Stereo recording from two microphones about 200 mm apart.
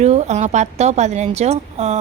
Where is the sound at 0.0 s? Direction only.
35° right (ahead or behind).